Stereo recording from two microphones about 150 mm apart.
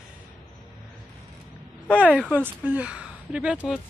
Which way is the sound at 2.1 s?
10° right (ahead or behind).